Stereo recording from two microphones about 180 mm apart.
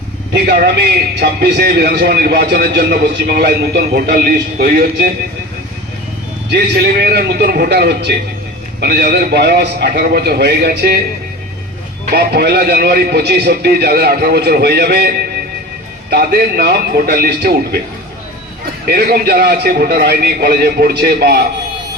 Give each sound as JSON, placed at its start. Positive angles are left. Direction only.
{"t": 0.3, "sound": "a man's voice", "side_deg": -60}
{"t": 6.5, "sound": "a man's voice", "side_deg": -60}
{"t": 12.1, "sound": "a man's voice", "side_deg": -65}
{"t": 18.9, "sound": "a man's voice", "side_deg": -60}